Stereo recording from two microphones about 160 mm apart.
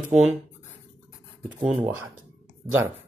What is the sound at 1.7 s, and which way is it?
Speech, 10° right (ahead or behind).